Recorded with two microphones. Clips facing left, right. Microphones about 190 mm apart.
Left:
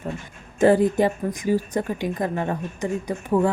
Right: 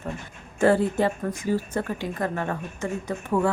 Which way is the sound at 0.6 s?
15° left (ahead or behind).